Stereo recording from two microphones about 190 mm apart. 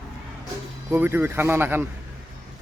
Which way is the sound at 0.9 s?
10° right (ahead or behind).